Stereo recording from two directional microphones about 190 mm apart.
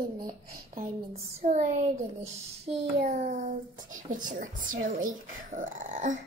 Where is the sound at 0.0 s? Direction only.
50° right (ahead or behind).